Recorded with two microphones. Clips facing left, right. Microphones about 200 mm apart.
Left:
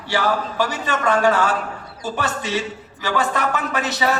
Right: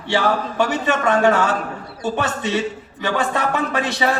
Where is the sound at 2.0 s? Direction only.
25° right (ahead or behind).